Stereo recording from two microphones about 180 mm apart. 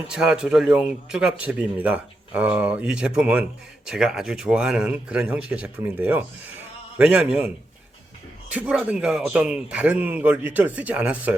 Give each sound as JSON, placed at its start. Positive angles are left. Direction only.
{"t": 0.1, "sound": "speech", "side_deg": -5}
{"t": 8.5, "sound": "speech", "side_deg": -5}